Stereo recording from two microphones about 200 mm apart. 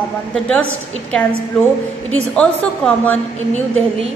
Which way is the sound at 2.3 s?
5° left (ahead or behind).